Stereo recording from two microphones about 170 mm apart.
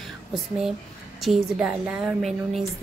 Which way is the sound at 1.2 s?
5° right (ahead or behind).